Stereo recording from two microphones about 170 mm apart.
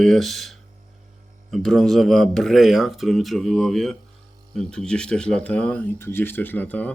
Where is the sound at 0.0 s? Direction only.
Centre (ahead or behind).